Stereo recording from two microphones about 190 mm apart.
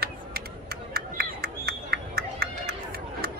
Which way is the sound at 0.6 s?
55° right (ahead or behind).